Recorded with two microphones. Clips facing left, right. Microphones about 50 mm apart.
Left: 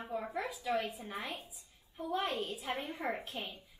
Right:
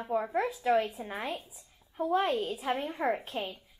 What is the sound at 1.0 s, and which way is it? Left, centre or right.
Speech, right.